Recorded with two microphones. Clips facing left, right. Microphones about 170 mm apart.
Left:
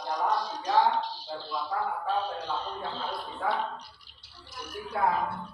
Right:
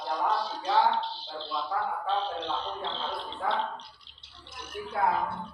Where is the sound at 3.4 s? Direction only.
25° right (ahead or behind).